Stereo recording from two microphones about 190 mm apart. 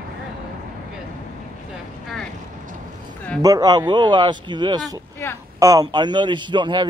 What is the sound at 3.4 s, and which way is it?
A man's voice, 20° right (ahead or behind).